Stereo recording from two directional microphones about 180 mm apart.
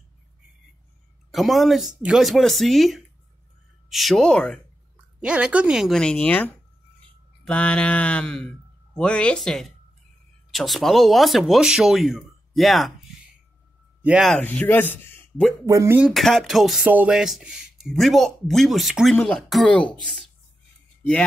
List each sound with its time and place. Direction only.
1.3 s speech: centre (ahead or behind)
5.2 s speech: 5° right (ahead or behind)
14.0 s a man's voice: centre (ahead or behind)
15.6 s speech: 15° right (ahead or behind)
16.0 s speech: centre (ahead or behind)
21.0 s speech: 5° left (ahead or behind)